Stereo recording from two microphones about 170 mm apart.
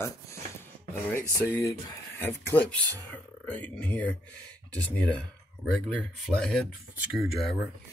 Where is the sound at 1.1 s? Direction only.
15° left (ahead or behind).